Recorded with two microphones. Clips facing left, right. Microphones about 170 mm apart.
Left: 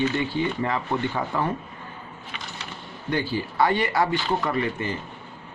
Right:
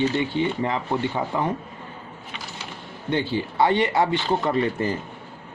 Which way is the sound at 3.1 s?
20° right (ahead or behind).